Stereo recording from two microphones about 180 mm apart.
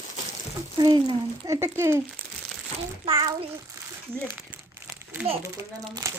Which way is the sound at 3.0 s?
25° right (ahead or behind).